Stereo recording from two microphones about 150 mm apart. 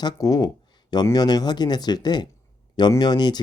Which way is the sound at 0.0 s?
25° left (ahead or behind).